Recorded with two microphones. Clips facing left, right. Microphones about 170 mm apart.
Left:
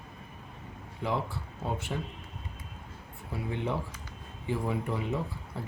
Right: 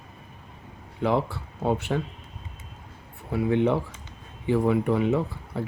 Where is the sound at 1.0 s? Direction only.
65° right (ahead or behind).